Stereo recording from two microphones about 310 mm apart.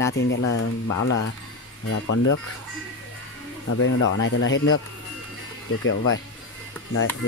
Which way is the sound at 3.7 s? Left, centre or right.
Left.